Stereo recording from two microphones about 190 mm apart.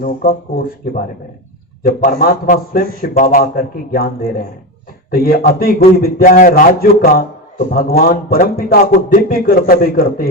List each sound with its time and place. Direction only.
0.0 s a man's voice: 55° left (ahead or behind)